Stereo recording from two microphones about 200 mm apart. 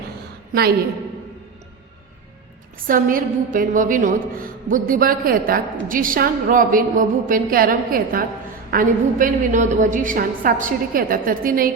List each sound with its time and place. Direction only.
2.8 s a woman's voice: 45° right (ahead or behind)